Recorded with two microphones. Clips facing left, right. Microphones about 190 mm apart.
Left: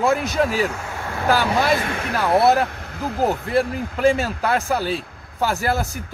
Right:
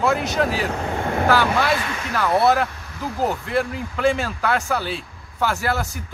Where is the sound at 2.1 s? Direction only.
10° left (ahead or behind).